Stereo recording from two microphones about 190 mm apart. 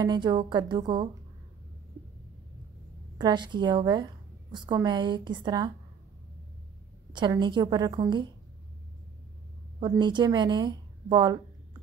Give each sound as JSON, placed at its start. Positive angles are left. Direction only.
{"t": 0.0, "sound": "a woman's voice", "side_deg": -20}
{"t": 3.2, "sound": "a woman's voice", "side_deg": -25}
{"t": 7.1, "sound": "a woman's voice", "side_deg": -25}
{"t": 9.8, "sound": "a woman's voice", "side_deg": -25}